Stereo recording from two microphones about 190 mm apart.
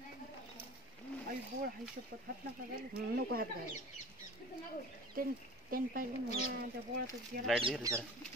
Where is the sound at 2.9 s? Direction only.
55° right (ahead or behind).